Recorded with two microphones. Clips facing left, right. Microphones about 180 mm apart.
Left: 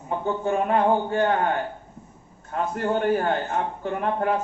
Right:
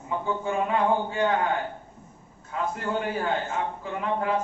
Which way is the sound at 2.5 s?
60° left (ahead or behind).